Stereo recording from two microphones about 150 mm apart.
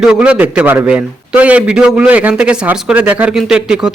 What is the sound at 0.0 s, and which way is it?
Speech, 5° right (ahead or behind).